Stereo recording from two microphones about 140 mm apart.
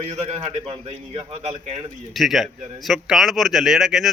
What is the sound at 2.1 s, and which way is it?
A man's voice, centre (ahead or behind).